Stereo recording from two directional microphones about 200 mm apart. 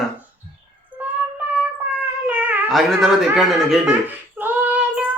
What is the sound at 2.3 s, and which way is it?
Cat, 5° right (ahead or behind).